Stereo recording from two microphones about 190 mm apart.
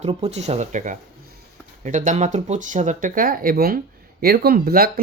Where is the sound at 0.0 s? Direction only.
35° right (ahead or behind).